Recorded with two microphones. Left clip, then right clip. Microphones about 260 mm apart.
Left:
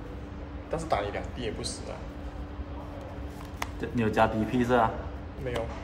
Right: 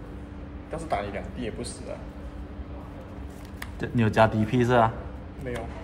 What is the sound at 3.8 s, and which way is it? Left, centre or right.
A man's voice, right.